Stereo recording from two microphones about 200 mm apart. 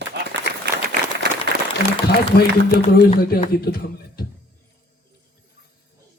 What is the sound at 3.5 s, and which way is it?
Speech, 50° left (ahead or behind).